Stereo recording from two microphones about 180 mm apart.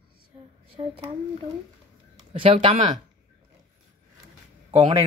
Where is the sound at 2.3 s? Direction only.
35° right (ahead or behind).